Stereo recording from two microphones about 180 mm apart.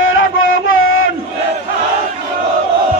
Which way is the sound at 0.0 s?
90° left.